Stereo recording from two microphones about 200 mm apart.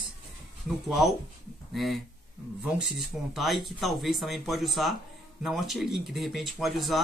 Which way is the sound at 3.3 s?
Centre (ahead or behind).